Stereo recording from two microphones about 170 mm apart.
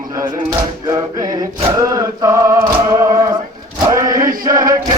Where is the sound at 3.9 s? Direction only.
20° right (ahead or behind).